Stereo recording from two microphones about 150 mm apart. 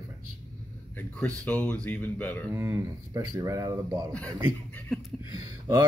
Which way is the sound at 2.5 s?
20° right (ahead or behind).